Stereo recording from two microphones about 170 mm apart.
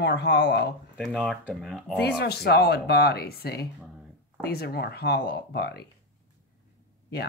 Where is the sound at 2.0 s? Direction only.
70° left (ahead or behind).